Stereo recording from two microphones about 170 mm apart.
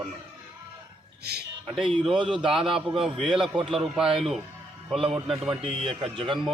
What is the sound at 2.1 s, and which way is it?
A man's voice, 5° right (ahead or behind).